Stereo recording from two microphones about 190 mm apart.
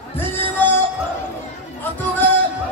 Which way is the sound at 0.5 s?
10° left (ahead or behind).